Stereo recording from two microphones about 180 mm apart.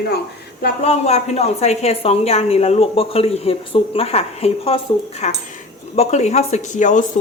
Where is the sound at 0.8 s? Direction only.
35° left (ahead or behind).